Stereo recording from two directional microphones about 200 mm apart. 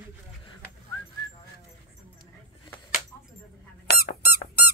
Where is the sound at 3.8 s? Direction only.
50° left (ahead or behind).